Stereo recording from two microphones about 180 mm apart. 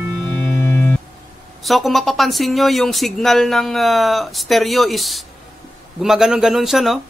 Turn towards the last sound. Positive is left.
turn(degrees=0)  # may be behind; listen again after turning